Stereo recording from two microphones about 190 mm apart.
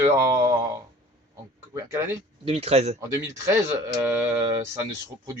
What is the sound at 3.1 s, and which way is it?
Speech, 15° right (ahead or behind).